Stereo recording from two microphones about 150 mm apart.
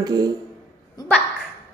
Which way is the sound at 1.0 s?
25° left (ahead or behind).